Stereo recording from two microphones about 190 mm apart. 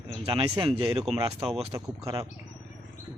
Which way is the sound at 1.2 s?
15° right (ahead or behind).